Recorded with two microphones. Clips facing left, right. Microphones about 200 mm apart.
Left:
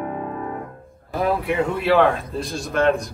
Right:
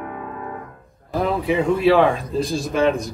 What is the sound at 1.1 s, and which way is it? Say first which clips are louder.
A man's voice: right 1 dB; centre (ahead or behind).